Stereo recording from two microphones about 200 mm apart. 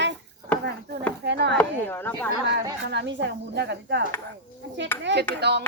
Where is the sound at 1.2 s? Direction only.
60° right (ahead or behind).